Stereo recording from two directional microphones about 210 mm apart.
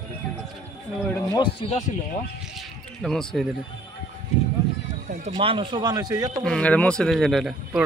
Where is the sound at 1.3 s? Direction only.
25° left (ahead or behind).